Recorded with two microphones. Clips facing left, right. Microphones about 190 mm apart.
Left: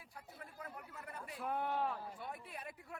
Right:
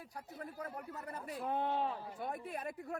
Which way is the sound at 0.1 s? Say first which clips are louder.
Right 6 dB; 40° right (ahead or behind).